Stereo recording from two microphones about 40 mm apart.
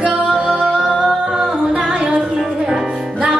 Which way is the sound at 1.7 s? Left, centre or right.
Right.